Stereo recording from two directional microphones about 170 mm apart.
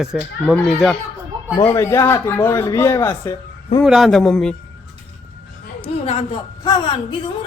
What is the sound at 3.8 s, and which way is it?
Speech, centre (ahead or behind).